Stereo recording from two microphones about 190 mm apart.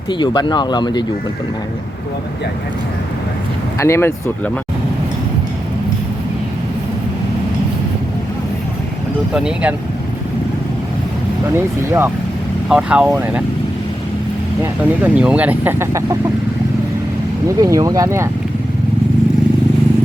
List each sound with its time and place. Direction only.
0.1 s speech: 25° left (ahead or behind)
3.8 s speech: 15° left (ahead or behind)
9.3 s speech: 5° right (ahead or behind)
11.5 s speech: 10° right (ahead or behind)
14.6 s speech: 10° right (ahead or behind)
17.6 s speech: 20° right (ahead or behind)